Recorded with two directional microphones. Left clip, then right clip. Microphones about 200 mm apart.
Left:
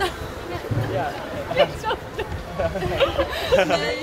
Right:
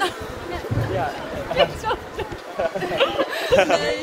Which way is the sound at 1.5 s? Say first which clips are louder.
Even; centre (ahead or behind).